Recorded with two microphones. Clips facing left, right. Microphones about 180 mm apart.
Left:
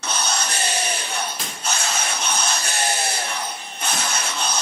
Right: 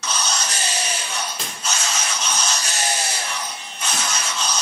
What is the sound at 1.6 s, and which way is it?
Music, 60° left (ahead or behind).